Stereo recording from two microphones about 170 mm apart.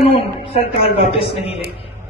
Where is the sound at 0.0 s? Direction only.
35° left (ahead or behind).